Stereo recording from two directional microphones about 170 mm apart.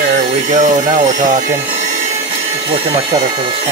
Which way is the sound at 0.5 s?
45° right (ahead or behind).